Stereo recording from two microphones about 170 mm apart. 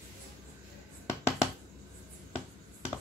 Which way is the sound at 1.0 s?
15° left (ahead or behind).